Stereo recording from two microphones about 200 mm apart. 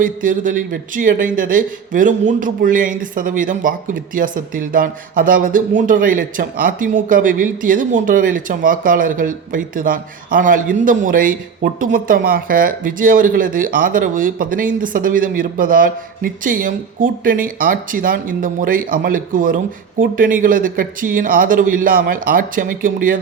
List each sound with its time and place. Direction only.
0.0 s speech: 45° right (ahead or behind)